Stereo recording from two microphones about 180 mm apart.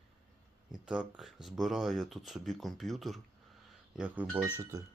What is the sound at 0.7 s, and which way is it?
Speech, 5° right (ahead or behind).